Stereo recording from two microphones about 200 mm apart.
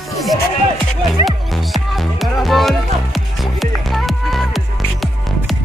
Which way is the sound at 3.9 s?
Centre (ahead or behind).